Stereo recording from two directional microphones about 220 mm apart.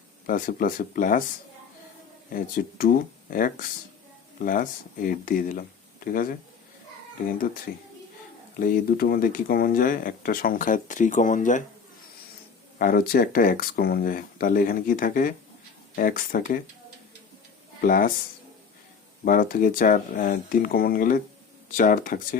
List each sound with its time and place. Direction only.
0.3 s speech: 40° left (ahead or behind)
2.3 s speech: 40° left (ahead or behind)
7.3 s speech: 40° left (ahead or behind)
12.8 s speech: 40° left (ahead or behind)
17.7 s speech: 40° left (ahead or behind)
19.2 s speech: 40° left (ahead or behind)